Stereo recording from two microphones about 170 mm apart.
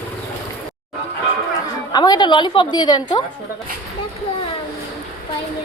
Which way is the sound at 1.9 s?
25° left (ahead or behind).